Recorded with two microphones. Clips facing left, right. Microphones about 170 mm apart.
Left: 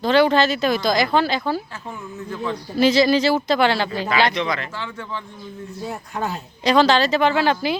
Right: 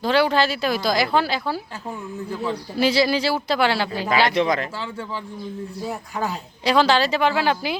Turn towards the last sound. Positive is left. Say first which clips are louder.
# left 2 dB
turn(degrees=-10)  # may be behind; listen again after turning